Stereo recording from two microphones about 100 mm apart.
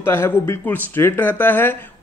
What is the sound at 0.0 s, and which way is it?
Speech, 25° left (ahead or behind).